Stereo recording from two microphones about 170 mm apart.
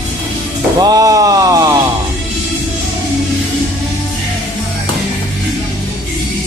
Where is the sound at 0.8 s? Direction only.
20° right (ahead or behind).